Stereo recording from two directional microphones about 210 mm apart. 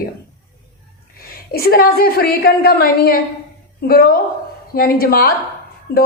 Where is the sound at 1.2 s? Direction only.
45° left (ahead or behind).